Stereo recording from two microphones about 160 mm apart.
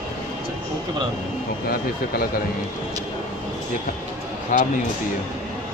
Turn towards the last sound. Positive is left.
turn(degrees=55)  # may be behind; listen again after turning